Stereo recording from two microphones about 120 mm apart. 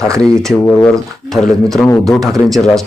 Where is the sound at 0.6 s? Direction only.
15° left (ahead or behind).